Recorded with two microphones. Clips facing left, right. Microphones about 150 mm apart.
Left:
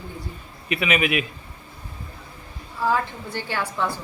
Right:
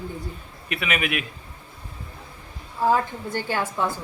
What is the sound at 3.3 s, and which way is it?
Speech, 45° right (ahead or behind).